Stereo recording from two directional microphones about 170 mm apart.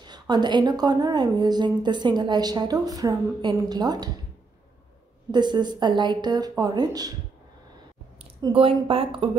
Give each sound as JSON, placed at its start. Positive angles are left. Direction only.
{"t": 0.0, "sound": "a woman's voice", "side_deg": -25}
{"t": 5.3, "sound": "a woman's voice", "side_deg": -25}
{"t": 8.4, "sound": "a woman's voice", "side_deg": -30}